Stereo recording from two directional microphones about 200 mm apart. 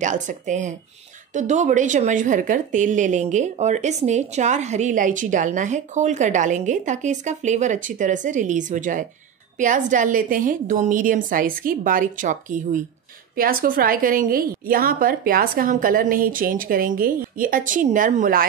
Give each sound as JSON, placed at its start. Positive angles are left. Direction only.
{"t": 0.0, "sound": "a woman's voice", "side_deg": -40}